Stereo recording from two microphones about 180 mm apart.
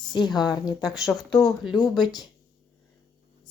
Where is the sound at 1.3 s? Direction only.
20° left (ahead or behind).